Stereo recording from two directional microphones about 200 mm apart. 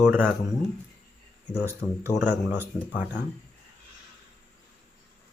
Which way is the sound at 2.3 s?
10° right (ahead or behind).